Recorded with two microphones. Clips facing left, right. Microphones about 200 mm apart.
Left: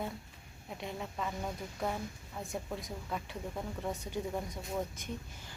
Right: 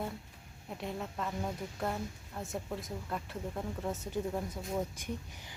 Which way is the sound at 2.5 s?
Centre (ahead or behind).